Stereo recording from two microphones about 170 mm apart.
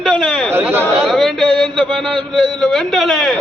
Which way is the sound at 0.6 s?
15° right (ahead or behind).